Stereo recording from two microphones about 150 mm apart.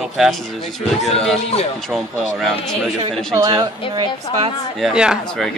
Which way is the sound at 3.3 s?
25° right (ahead or behind).